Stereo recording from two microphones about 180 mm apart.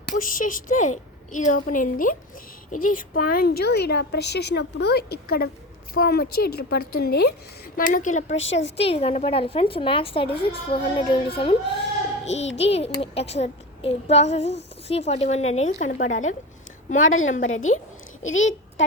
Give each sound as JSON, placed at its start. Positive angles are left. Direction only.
{"t": 0.0, "sound": "a woman's voice", "side_deg": 50}
{"t": 7.8, "sound": "a woman's voice", "side_deg": 50}
{"t": 17.0, "sound": "a woman's voice", "side_deg": 90}